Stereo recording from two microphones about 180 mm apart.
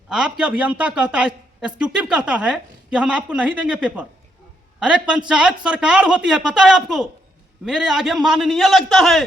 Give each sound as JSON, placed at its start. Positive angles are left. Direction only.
{"t": 0.1, "sound": "a woman's voice", "side_deg": -5}